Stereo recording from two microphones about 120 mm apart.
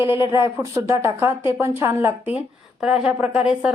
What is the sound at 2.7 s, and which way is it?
Speech, 10° right (ahead or behind).